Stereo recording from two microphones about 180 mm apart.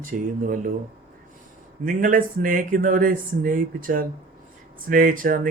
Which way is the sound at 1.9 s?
50° right (ahead or behind).